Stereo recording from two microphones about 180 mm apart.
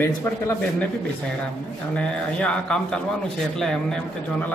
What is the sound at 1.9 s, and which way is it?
Speech, 5° left (ahead or behind).